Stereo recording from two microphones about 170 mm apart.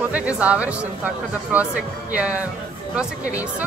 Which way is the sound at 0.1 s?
10° right (ahead or behind).